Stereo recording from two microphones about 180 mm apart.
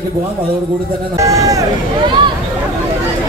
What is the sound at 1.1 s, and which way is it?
Speech, 20° right (ahead or behind).